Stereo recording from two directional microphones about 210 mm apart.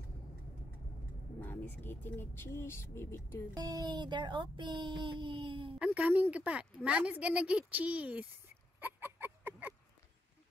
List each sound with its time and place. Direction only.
1.4 s speech: 10° left (ahead or behind)
3.5 s speech: 20° right (ahead or behind)
5.9 s speech: 10° right (ahead or behind)
8.7 s a sound: 10° right (ahead or behind)